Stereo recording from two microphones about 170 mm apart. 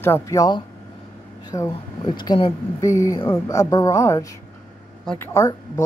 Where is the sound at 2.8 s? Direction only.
15° left (ahead or behind).